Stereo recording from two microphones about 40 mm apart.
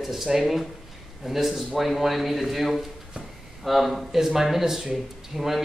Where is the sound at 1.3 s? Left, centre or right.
Centre.